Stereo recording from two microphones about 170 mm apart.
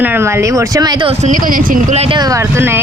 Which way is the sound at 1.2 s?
50° right (ahead or behind).